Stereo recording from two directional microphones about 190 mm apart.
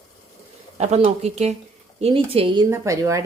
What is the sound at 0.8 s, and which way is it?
Speech, 35° right (ahead or behind).